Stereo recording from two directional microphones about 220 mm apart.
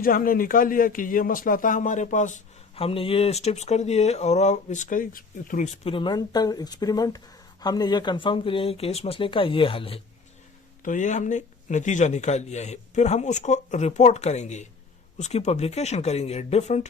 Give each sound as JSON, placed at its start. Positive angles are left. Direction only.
{"t": 0.0, "sound": "speech", "side_deg": 40}
{"t": 5.8, "sound": "speech", "side_deg": 25}